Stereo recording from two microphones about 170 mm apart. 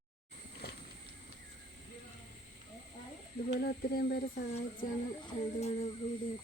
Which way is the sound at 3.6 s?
60° left (ahead or behind).